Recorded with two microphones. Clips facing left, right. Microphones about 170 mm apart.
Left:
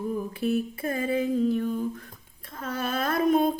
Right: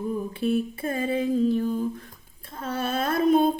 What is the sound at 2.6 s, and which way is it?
Female singing, 30° right (ahead or behind).